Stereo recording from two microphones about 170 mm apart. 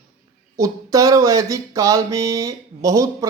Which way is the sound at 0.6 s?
20° right (ahead or behind).